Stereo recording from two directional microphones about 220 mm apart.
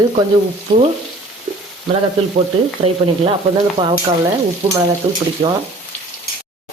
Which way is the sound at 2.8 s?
30° right (ahead or behind).